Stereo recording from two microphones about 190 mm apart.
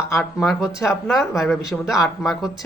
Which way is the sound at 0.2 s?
Centre (ahead or behind).